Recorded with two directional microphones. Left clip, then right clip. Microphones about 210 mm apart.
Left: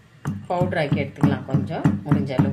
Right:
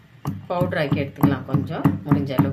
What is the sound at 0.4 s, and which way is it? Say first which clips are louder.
Speech: even; 5° right (ahead or behind).